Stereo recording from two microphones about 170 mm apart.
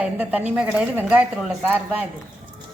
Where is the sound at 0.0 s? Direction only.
10° right (ahead or behind).